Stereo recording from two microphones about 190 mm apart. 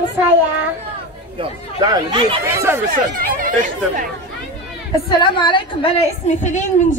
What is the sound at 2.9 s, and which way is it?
Speech, 45° right (ahead or behind).